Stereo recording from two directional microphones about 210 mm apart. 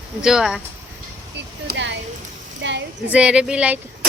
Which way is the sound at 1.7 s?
60° right (ahead or behind).